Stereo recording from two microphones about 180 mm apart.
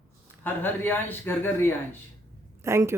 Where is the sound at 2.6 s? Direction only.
15° right (ahead or behind).